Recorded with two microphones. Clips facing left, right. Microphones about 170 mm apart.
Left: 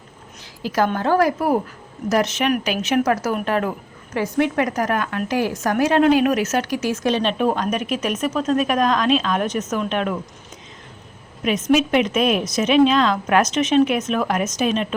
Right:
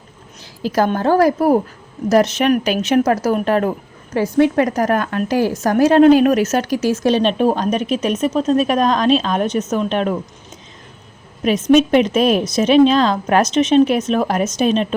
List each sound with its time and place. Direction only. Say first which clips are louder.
0.6 s a woman's voice: right 4 dB; 35° right (ahead or behind)
11.7 s a woman's voice: right 5 dB; 35° right (ahead or behind)